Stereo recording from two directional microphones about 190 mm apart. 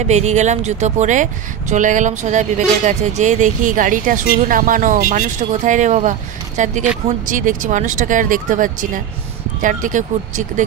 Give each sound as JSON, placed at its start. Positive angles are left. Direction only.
{"t": 0.0, "sound": "speech", "side_deg": -35}